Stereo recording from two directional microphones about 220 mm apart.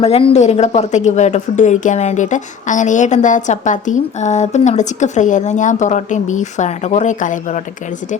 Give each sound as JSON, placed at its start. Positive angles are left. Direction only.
{"t": 0.0, "sound": "a woman's voice", "side_deg": 25}